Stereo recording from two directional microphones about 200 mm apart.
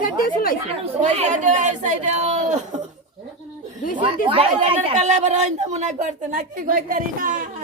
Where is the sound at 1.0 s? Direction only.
35° right (ahead or behind).